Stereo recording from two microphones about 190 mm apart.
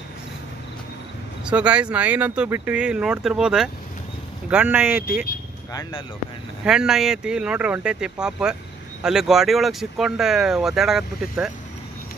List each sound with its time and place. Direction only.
1.4 s speech: 5° right (ahead or behind)
5.7 s speech: 20° left (ahead or behind)
6.6 s speech: 5° right (ahead or behind)